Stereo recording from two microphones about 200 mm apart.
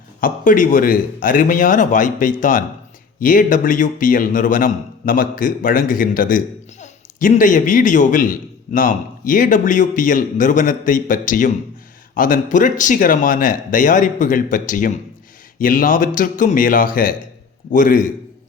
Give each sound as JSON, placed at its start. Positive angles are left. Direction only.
{"t": 0.2, "sound": "a man's voice", "side_deg": 40}